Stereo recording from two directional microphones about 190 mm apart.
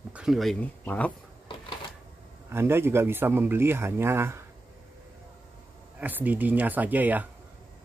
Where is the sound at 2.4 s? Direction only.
15° right (ahead or behind).